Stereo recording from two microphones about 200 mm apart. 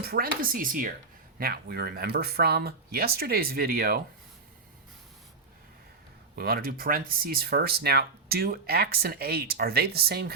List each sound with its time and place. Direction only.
0.0 s speech: 50° right (ahead or behind)
6.3 s speech: 50° right (ahead or behind)